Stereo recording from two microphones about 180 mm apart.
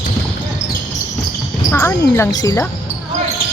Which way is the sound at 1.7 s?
15° left (ahead or behind).